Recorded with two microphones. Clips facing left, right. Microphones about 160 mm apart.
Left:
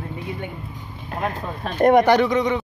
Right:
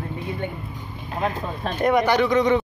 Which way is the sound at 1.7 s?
50° left (ahead or behind).